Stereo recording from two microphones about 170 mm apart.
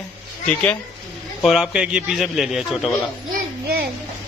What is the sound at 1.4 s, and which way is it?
A man's voice, centre (ahead or behind).